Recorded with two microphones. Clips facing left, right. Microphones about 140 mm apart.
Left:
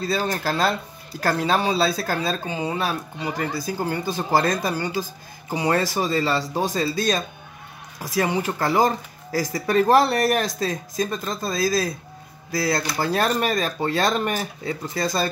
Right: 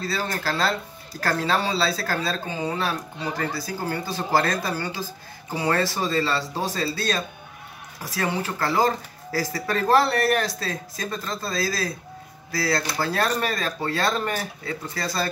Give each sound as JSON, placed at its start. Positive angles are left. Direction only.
{"t": 0.0, "sound": "speech", "side_deg": 20}